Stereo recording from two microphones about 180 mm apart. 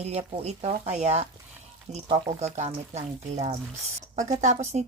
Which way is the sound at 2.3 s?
40° right (ahead or behind).